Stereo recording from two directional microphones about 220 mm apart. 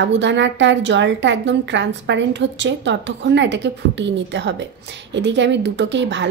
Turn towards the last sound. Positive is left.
turn(degrees=-55)  # may be behind; listen again after turning